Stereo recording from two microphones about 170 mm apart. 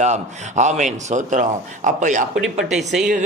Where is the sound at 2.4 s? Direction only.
Centre (ahead or behind).